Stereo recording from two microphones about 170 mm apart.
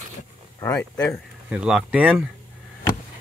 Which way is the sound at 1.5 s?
5° right (ahead or behind).